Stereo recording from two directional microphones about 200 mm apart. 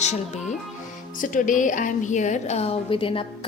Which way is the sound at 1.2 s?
40° left (ahead or behind).